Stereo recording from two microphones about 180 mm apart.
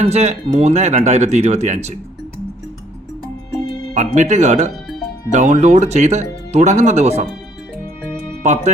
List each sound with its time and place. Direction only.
0.0 s speech: 35° right (ahead or behind)
3.9 s speech: 40° right (ahead or behind)